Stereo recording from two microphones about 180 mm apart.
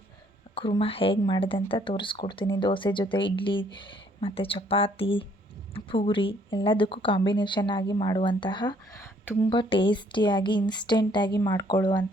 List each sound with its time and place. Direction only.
0.5 s a woman's voice: 30° left (ahead or behind)
9.2 s a woman's voice: 10° left (ahead or behind)
9.5 s speech: 30° left (ahead or behind)